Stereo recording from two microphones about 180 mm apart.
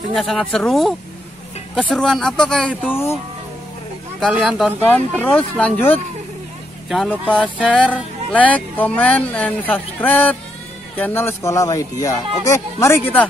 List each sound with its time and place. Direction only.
0.1 s speech: centre (ahead or behind)
4.4 s speech: centre (ahead or behind)
4.8 s music: 10° left (ahead or behind)
6.9 s speech: 5° left (ahead or behind)
7.7 s music: 5° left (ahead or behind)
12.8 s music: 10° left (ahead or behind)